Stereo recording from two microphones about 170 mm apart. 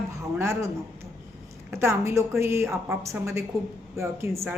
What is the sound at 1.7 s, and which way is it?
A woman's voice, 15° right (ahead or behind).